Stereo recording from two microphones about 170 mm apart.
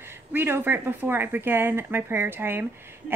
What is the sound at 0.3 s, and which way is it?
Speech, 10° right (ahead or behind).